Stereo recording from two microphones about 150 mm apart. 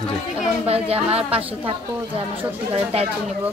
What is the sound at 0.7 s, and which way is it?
Speech, 40° right (ahead or behind).